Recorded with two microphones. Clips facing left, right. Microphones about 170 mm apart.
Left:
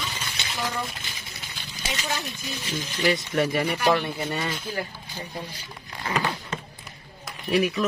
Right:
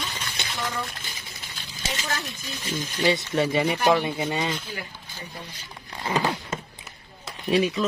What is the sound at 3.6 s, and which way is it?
Speech, 15° right (ahead or behind).